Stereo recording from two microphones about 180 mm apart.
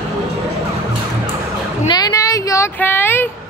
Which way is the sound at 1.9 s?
20° left (ahead or behind).